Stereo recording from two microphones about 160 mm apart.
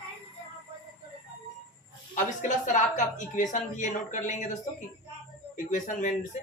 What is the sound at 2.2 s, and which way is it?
Speech, 50° left (ahead or behind).